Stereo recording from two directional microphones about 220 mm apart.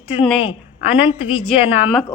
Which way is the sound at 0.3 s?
25° left (ahead or behind).